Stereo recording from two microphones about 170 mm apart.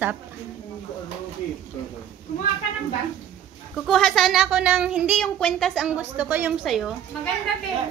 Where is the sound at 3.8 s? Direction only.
Centre (ahead or behind).